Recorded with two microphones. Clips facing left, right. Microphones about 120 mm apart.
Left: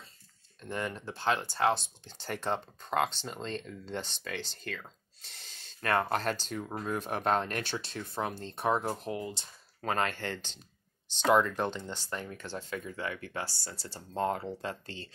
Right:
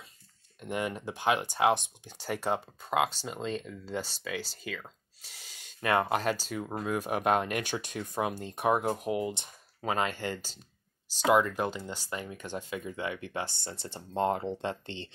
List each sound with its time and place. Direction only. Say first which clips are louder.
0.6 s speech: right 3 dB; 15° right (ahead or behind)